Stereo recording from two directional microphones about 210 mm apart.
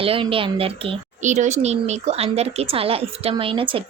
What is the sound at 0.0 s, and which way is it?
Speech, 25° right (ahead or behind).